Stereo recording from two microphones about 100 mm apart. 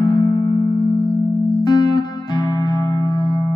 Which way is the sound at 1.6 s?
45° left (ahead or behind).